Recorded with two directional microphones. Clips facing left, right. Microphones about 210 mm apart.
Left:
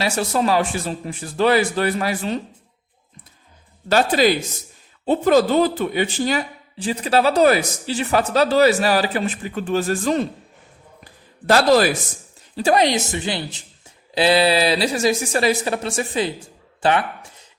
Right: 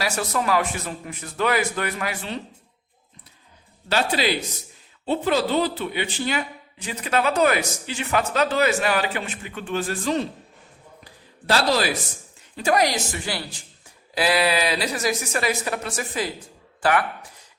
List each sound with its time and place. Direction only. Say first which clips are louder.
0.0 s speech: left 5 dB; 30° left (ahead or behind)
3.8 s speech: left 6 dB; 45° left (ahead or behind)
11.4 s speech: left 7 dB; 50° left (ahead or behind)
12.5 s a woman's voice: left 4 dB; 30° left (ahead or behind)